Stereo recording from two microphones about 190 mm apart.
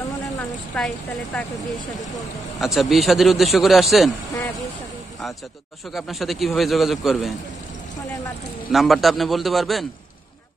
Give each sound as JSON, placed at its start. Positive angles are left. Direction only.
{"t": 0.7, "sound": "a man's voice", "side_deg": 5}
{"t": 2.6, "sound": "a man's voice", "side_deg": 0}
{"t": 5.9, "sound": "a man's voice", "side_deg": 0}
{"t": 8.7, "sound": "a man's voice", "side_deg": 0}